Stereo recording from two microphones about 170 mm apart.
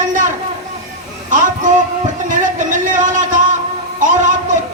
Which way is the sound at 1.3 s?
50° right (ahead or behind).